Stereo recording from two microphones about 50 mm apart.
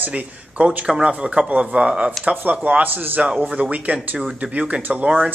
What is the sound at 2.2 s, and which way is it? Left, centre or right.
Speech, right.